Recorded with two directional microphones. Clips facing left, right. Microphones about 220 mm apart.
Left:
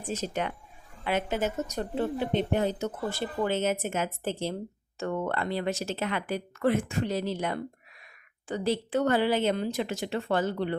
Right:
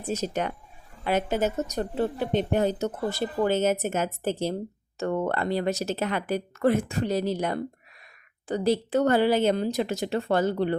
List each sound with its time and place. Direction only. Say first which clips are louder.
0.1 s speech: right 3 dB; 40° right (ahead or behind)